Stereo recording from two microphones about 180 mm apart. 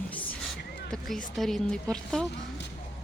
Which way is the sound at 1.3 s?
Centre (ahead or behind).